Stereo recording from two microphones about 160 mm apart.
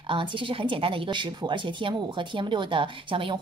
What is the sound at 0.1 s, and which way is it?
Speech, 30° right (ahead or behind).